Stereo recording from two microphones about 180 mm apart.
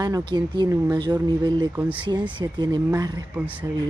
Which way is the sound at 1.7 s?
10° right (ahead or behind).